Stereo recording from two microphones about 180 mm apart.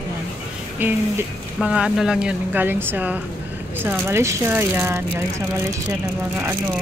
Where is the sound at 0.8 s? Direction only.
10° right (ahead or behind).